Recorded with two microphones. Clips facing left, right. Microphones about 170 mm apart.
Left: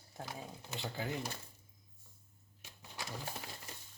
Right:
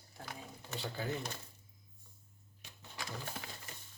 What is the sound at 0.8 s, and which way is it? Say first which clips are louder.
Speech: right 1 dB; 15° left (ahead or behind).